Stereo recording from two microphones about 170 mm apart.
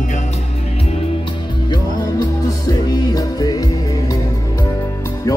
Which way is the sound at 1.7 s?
20° left (ahead or behind).